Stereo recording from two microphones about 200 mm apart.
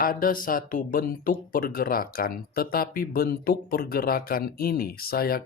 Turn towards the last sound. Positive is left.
turn(degrees=50)  # may be behind; listen again after turning